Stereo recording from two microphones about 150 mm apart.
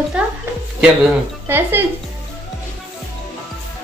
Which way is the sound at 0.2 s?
5° right (ahead or behind).